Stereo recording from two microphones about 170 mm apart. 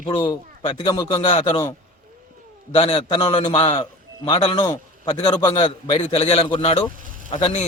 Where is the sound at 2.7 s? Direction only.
30° left (ahead or behind).